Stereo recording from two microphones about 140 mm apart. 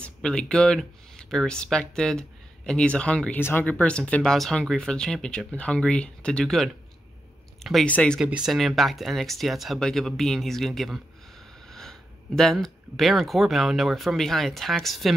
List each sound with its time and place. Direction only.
0.0 s speech: 5° left (ahead or behind)
8.2 s speech: 5° right (ahead or behind)